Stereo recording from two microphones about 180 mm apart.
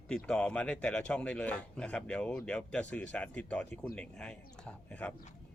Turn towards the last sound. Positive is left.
turn(degrees=5)  # may be behind; listen again after turning